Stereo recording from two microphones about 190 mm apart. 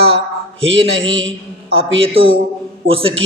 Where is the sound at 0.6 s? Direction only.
90° right.